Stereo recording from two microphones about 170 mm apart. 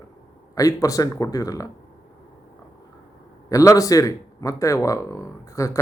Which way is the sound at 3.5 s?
20° left (ahead or behind).